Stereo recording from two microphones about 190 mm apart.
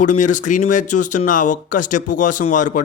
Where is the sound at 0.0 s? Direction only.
40° left (ahead or behind).